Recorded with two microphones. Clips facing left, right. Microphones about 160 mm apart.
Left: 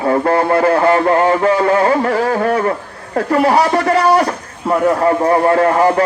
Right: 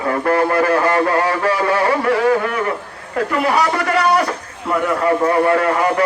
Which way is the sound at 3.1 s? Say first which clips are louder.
Left 5 dB; 35° left (ahead or behind).